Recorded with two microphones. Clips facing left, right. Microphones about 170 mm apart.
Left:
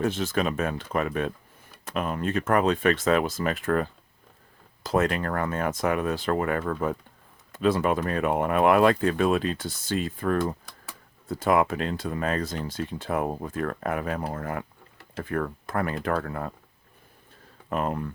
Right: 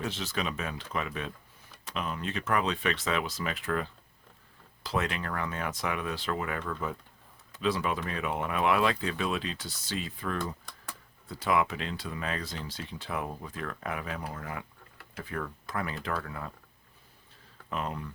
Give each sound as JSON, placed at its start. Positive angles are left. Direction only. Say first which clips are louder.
{"t": 0.0, "sound": "speech", "louder": "left 8 dB", "side_deg": 50}
{"t": 17.7, "sound": "speech", "louder": "left 7 dB", "side_deg": 50}